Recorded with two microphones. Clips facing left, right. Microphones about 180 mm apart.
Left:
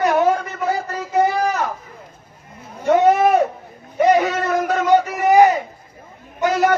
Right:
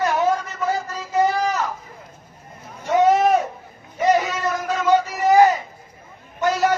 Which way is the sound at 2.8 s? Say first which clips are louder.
Left 2 dB; 60° left (ahead or behind).